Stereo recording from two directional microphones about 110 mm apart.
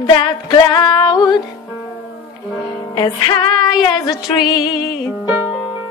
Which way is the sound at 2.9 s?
50° left (ahead or behind).